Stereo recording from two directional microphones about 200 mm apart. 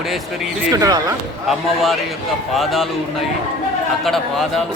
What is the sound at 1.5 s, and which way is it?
Speech, centre (ahead or behind).